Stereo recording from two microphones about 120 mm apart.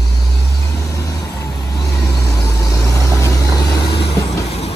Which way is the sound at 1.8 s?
30° left (ahead or behind).